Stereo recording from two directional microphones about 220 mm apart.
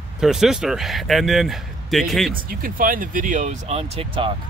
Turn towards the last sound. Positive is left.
turn(degrees=-25)  # may be behind; listen again after turning